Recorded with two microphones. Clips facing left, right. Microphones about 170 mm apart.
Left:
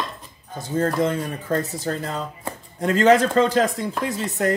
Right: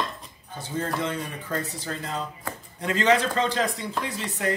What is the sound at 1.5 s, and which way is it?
Speech, 40° left (ahead or behind).